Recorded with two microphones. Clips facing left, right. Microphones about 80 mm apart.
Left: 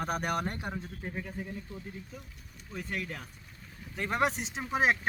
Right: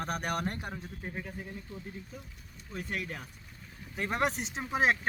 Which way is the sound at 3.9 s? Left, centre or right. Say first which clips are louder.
Left 1 dB; centre.